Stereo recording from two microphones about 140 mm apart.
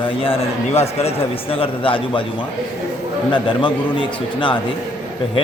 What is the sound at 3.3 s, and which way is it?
A man's voice, 35° left (ahead or behind).